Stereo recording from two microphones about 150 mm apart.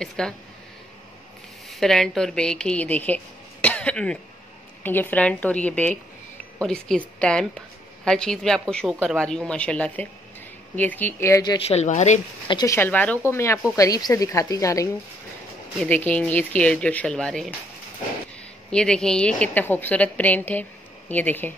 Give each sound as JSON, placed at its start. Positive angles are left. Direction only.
{"t": 0.0, "sound": "a woman's voice", "side_deg": 5}
{"t": 1.7, "sound": "a woman's voice", "side_deg": 0}
{"t": 3.6, "sound": "cough", "side_deg": 5}
{"t": 4.8, "sound": "a woman's voice", "side_deg": 15}
{"t": 11.5, "sound": "speech", "side_deg": 45}
{"t": 12.4, "sound": "a woman's voice", "side_deg": 30}
{"t": 12.7, "sound": "a woman's voice", "side_deg": 10}
{"t": 15.8, "sound": "a woman's voice", "side_deg": 10}
{"t": 18.7, "sound": "a woman's voice", "side_deg": 5}